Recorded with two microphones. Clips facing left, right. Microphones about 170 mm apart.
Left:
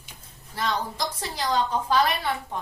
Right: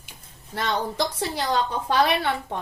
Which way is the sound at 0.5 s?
70° right (ahead or behind).